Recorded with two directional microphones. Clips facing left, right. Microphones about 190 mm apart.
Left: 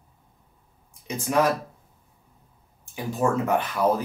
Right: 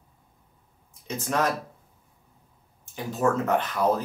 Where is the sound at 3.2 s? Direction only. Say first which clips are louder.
Even; 10° left (ahead or behind).